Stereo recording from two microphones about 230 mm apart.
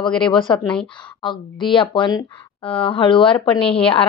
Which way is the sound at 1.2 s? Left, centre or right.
Left.